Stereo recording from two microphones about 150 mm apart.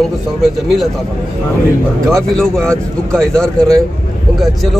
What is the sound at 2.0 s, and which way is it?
Speech, 5° left (ahead or behind).